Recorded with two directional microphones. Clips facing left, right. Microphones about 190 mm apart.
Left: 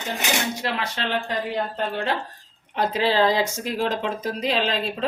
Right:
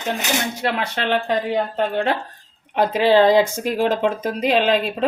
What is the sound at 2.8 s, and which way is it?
Speech, 50° right (ahead or behind).